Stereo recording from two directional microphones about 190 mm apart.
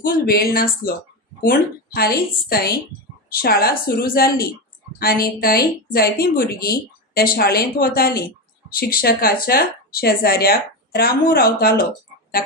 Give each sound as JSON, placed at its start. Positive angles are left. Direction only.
{"t": 0.0, "sound": "speech", "side_deg": 50}